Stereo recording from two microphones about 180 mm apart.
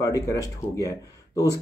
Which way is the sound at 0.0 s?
20° left (ahead or behind).